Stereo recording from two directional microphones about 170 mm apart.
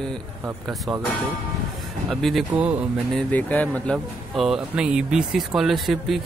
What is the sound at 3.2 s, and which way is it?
Speech, 10° left (ahead or behind).